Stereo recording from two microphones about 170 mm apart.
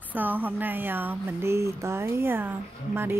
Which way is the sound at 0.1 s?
10° right (ahead or behind).